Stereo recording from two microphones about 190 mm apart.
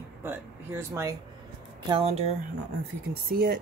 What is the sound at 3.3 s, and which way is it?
Speech, 55° right (ahead or behind).